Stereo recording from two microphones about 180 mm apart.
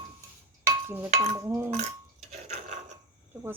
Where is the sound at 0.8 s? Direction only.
15° right (ahead or behind).